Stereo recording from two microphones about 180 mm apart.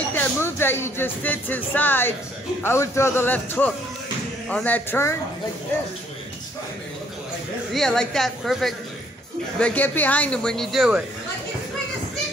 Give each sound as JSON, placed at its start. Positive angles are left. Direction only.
{"t": 0.1, "sound": "a man's voice", "side_deg": 10}
{"t": 7.7, "sound": "a man's voice", "side_deg": 5}